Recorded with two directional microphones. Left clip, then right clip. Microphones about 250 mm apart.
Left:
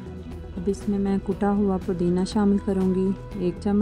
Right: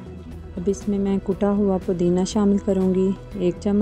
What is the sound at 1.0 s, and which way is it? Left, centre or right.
Speech, centre.